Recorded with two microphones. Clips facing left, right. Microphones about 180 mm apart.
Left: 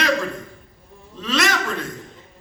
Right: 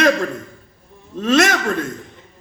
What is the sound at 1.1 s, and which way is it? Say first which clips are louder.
Speech: right 7 dB; 50° right (ahead or behind).